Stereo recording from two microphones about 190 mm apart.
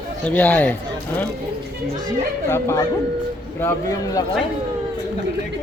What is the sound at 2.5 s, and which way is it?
A man's voice, 15° left (ahead or behind).